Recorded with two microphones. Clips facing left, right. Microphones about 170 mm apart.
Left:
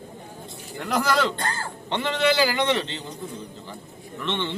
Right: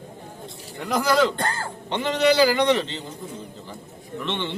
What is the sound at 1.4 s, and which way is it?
Speech, 55° right (ahead or behind).